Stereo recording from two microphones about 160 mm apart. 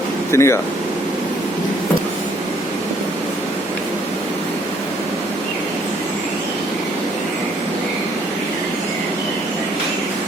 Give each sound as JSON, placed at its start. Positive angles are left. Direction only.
{"t": 0.3, "sound": "speech", "side_deg": 15}